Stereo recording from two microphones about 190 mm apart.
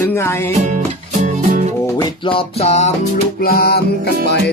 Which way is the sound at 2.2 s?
30° left (ahead or behind).